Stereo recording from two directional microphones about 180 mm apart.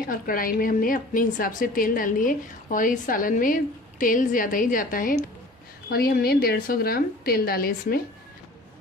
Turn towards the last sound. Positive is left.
turn(degrees=55)  # may be behind; listen again after turning